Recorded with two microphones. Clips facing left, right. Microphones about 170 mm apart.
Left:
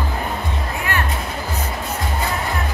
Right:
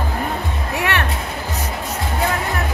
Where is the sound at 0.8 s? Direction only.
80° right.